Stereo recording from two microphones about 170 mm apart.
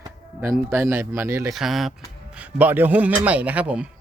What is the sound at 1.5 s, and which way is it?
Speech, centre (ahead or behind).